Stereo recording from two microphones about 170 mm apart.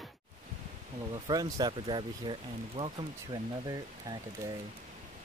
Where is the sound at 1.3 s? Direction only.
20° right (ahead or behind).